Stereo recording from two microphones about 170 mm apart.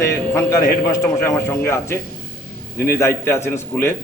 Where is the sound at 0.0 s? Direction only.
15° left (ahead or behind).